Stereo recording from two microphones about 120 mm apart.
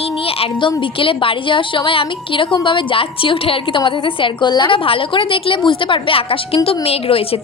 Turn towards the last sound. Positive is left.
turn(degrees=55)  # may be behind; listen again after turning